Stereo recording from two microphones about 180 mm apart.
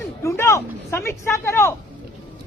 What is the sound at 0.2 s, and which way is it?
Speech, 15° left (ahead or behind).